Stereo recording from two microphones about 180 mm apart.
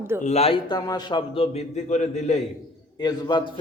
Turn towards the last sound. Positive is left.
turn(degrees=25)  # may be behind; listen again after turning